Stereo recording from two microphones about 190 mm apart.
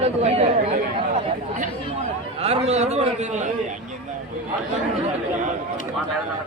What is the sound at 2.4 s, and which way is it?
A man's voice, 35° right (ahead or behind).